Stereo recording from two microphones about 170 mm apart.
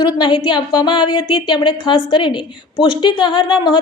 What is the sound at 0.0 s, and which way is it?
A woman's voice, 25° left (ahead or behind).